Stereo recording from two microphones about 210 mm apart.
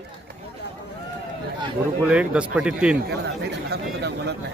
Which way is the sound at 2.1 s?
5° right (ahead or behind).